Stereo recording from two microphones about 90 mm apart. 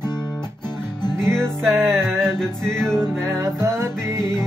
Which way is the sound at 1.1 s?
5° left (ahead or behind).